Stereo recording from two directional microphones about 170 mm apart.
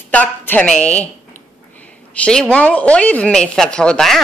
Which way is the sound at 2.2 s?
5° left (ahead or behind).